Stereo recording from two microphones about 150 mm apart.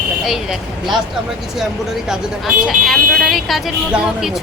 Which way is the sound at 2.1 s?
Centre (ahead or behind).